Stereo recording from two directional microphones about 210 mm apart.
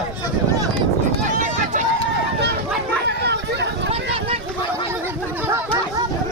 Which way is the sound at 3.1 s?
55° right (ahead or behind).